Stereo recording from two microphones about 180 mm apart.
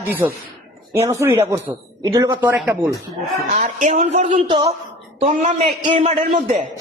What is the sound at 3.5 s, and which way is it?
Speech, 45° right (ahead or behind).